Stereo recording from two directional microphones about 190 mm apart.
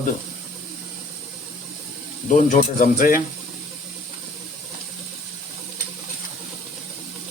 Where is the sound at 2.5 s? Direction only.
45° left (ahead or behind).